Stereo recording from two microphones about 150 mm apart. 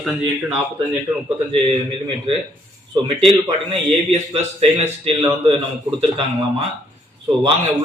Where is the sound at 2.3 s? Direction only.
35° right (ahead or behind).